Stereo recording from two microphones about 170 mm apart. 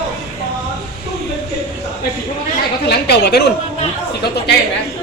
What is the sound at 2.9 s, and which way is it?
Speech, 75° left (ahead or behind).